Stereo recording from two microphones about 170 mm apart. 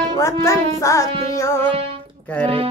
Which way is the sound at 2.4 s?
35° right (ahead or behind).